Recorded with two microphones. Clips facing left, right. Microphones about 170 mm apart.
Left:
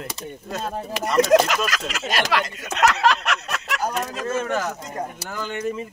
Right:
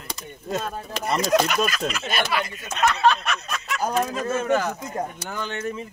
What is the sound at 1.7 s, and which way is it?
Speech, 90° left.